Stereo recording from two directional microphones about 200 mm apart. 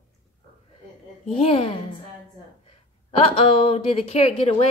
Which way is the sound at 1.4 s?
30° left (ahead or behind).